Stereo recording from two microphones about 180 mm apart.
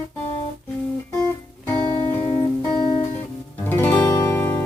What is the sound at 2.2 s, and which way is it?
Music, 25° left (ahead or behind).